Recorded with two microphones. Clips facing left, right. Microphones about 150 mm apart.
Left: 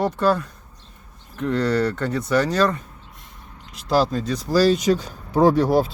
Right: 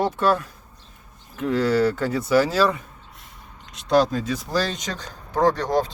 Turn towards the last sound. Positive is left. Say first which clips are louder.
# left 4 dB
turn(degrees=10)  # may be behind; listen again after turning